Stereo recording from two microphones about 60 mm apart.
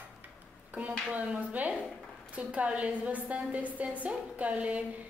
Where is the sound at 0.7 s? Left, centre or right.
Right.